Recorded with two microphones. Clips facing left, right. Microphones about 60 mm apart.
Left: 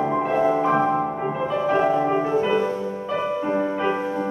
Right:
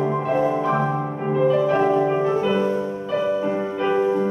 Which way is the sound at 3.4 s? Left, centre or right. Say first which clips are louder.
Even; centre.